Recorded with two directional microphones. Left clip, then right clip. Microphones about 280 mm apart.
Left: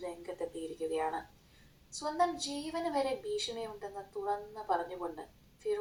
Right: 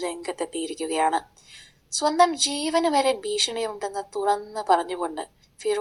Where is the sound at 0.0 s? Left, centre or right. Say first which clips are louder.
Right 10 dB; right.